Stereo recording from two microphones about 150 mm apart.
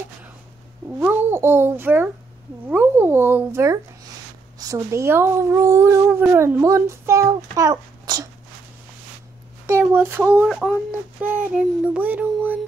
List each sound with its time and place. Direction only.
0.9 s a sound: 15° right (ahead or behind)
2.6 s child singing: 15° right (ahead or behind)
4.6 s speech: 20° right (ahead or behind)
9.7 s child singing: 15° right (ahead or behind)